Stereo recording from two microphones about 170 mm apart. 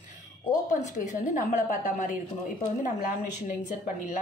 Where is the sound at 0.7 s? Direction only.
45° left (ahead or behind).